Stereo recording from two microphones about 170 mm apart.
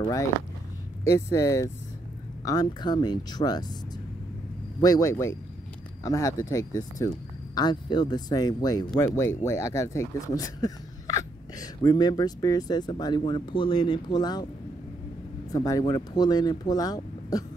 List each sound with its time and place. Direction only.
1.0 s speech: 20° left (ahead or behind)
4.8 s speech: 20° left (ahead or behind)
15.5 s speech: 20° left (ahead or behind)